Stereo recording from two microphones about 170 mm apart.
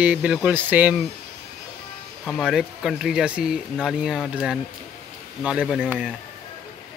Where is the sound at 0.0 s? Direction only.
5° right (ahead or behind).